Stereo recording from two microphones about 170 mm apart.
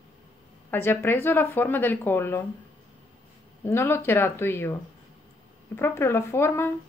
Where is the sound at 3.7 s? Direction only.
15° left (ahead or behind).